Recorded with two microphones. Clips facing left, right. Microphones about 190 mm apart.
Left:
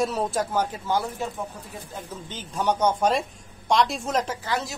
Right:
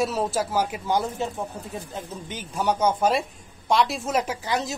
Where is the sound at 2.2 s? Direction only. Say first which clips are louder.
Even; 10° right (ahead or behind).